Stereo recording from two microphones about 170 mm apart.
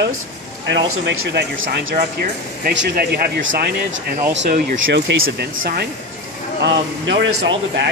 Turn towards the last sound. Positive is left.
turn(degrees=-90)